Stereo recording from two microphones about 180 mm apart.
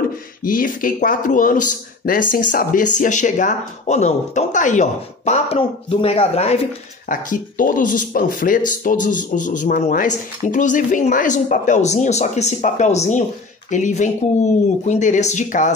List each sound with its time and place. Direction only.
0.4 s speech: 50° left (ahead or behind); by 6.6 s 35° left (ahead or behind)
7.1 s speech: 50° left (ahead or behind)